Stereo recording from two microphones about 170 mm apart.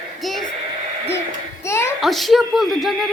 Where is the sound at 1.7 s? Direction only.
15° left (ahead or behind).